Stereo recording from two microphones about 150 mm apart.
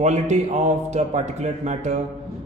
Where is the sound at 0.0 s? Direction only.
50° right (ahead or behind).